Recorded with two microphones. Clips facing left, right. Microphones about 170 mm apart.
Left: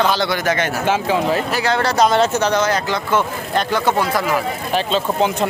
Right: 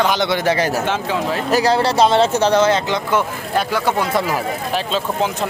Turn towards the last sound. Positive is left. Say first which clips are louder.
# left 2 dB
turn(degrees=0)  # may be behind; listen again after turning